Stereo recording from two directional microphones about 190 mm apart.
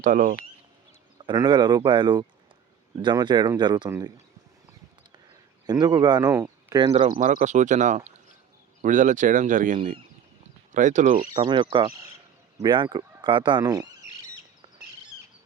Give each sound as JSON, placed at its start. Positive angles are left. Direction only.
{"t": 0.0, "sound": "speech", "side_deg": -45}
{"t": 1.2, "sound": "speech", "side_deg": -25}
{"t": 3.8, "sound": "speech", "side_deg": -15}
{"t": 5.6, "sound": "speech", "side_deg": -20}
{"t": 6.8, "sound": "speech", "side_deg": -30}
{"t": 11.4, "sound": "speech", "side_deg": -25}